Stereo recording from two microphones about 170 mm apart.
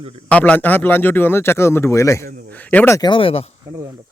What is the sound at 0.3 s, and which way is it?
A man's voice, 10° left (ahead or behind).